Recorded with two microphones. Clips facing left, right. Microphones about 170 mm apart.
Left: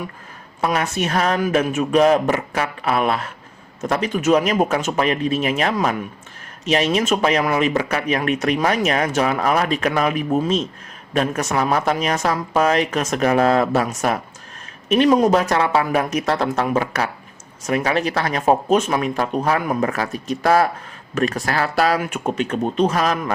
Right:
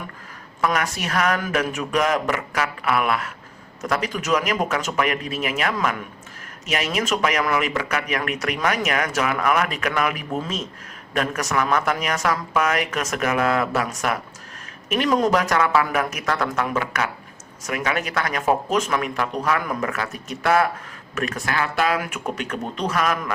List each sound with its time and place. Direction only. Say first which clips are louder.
0.6 s speech: left 3 dB; 25° left (ahead or behind)
22.0 s speech: left 6 dB; 25° left (ahead or behind)